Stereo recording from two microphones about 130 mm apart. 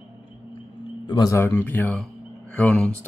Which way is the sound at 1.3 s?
20° left (ahead or behind).